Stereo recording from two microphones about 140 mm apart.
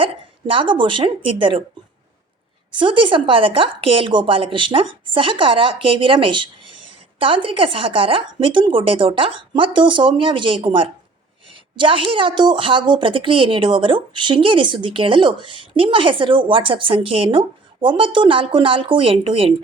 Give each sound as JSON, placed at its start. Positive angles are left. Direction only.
{"t": 0.0, "sound": "a woman's voice", "side_deg": -40}
{"t": 2.7, "sound": "a woman's voice", "side_deg": -35}